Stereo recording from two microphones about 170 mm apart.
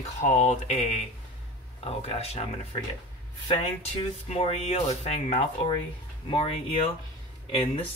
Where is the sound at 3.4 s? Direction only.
35° left (ahead or behind).